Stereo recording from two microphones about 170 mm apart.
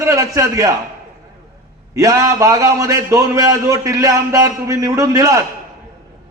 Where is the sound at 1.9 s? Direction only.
20° right (ahead or behind).